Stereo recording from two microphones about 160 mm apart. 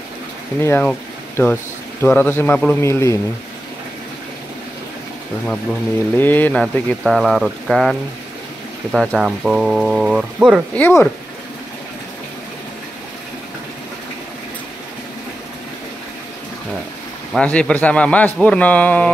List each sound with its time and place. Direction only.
0.6 s speech: 15° left (ahead or behind)
6.1 s a man's voice: 10° left (ahead or behind)
6.6 s speech: centre (ahead or behind)
10.8 s a man's voice: 20° left (ahead or behind)
17.3 s a man's voice: 5° left (ahead or behind)